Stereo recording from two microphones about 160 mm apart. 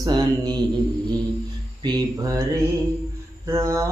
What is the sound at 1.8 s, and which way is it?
Mantra, 25° right (ahead or behind).